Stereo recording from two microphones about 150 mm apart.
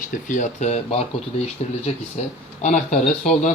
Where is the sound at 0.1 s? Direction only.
55° left (ahead or behind).